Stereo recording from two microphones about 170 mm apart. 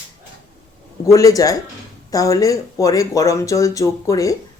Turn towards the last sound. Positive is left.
turn(degrees=20)  # may be behind; listen again after turning